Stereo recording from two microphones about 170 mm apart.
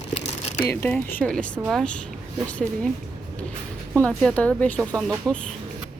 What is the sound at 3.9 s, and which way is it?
A woman's voice, 5° left (ahead or behind).